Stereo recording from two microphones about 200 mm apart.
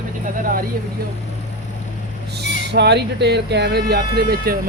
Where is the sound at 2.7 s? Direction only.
55° right (ahead or behind).